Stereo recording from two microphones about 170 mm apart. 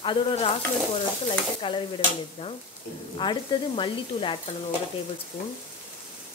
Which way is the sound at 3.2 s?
25° left (ahead or behind).